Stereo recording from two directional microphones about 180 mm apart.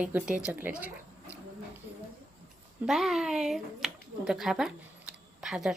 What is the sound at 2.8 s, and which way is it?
Speech, centre (ahead or behind).